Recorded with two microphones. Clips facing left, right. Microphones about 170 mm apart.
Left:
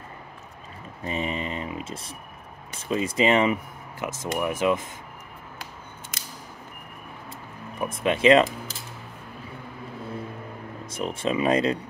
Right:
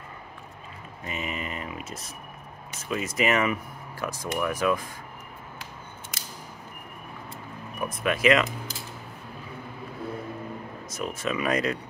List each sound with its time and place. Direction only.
1.0 s speech: 30° left (ahead or behind)
7.8 s speech: 25° left (ahead or behind)
10.9 s speech: 30° left (ahead or behind)